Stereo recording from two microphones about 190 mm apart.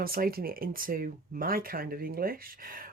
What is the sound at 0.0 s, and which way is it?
Speech, 50° right (ahead or behind).